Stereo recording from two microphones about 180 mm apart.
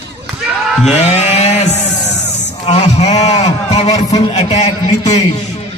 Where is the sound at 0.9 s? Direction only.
35° left (ahead or behind).